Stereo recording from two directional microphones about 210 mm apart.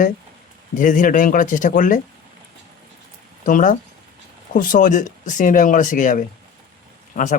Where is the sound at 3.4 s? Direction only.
40° left (ahead or behind).